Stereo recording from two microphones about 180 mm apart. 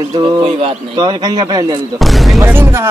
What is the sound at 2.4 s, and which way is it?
Speech, 15° right (ahead or behind).